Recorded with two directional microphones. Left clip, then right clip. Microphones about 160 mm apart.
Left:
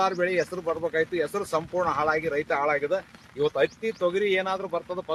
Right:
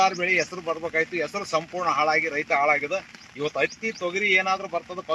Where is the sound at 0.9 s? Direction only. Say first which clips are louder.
Right 3 dB; 5° left (ahead or behind).